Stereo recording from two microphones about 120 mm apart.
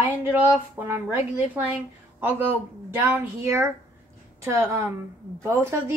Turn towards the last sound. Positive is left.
turn(degrees=-25)  # may be behind; listen again after turning